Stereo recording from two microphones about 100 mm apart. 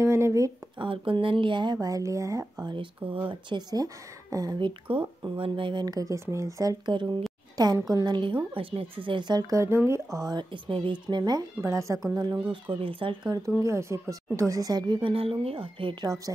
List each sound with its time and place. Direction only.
0.0 s a sound: 30° right (ahead or behind)
0.7 s a woman's voice: 60° right (ahead or behind); by 2.4 s 30° right (ahead or behind)
2.6 s speech: 55° right (ahead or behind); by 4.6 s 40° right (ahead or behind)
4.6 s speech: 55° right (ahead or behind)
5.9 s speech: 35° right (ahead or behind); by 7.2 s 50° right (ahead or behind)
7.5 s a woman's voice: 40° right (ahead or behind)
10.5 s a woman's voice: 60° right (ahead or behind)
11.6 s speech: 30° right (ahead or behind)
12.4 s speech: 20° right (ahead or behind)
13.0 s speech: 60° right (ahead or behind)
13.6 s speech: 30° right (ahead or behind)
14.5 s speech: 40° right (ahead or behind)